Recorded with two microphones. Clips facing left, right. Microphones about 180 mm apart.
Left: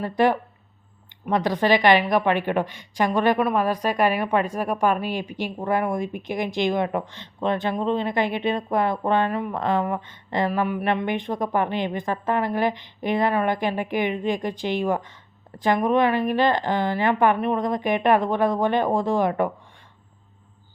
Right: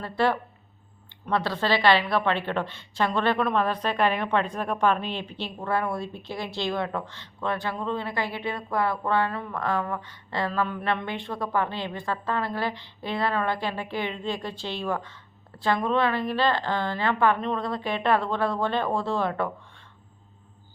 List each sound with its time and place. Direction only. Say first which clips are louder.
0.0 s speech: left 4 dB; 15° left (ahead or behind)